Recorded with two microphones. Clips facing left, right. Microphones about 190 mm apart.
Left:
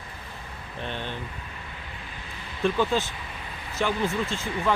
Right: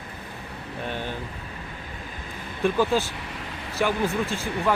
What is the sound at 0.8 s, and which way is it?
Speech, 10° right (ahead or behind).